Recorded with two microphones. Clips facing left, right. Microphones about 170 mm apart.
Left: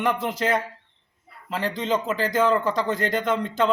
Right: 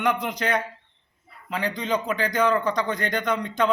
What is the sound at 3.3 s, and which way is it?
Speech, 30° left (ahead or behind).